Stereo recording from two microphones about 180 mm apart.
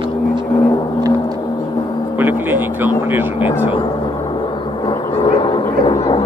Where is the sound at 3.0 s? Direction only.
10° right (ahead or behind).